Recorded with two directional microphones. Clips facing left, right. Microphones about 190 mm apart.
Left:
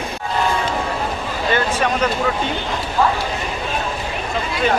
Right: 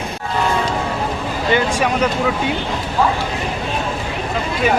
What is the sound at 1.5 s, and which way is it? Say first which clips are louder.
Speech: right 2 dB; 10° right (ahead or behind).